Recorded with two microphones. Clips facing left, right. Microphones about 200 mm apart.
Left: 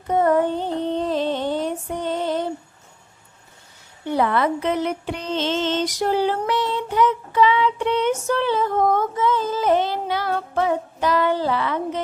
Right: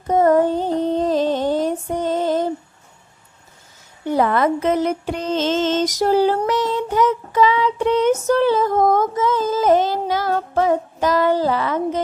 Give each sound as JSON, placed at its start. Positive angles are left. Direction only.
{"t": 0.1, "sound": "female singing", "side_deg": -40}
{"t": 4.0, "sound": "music", "side_deg": -45}